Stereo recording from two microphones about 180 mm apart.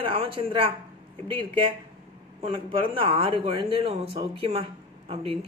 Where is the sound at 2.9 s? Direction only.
30° right (ahead or behind).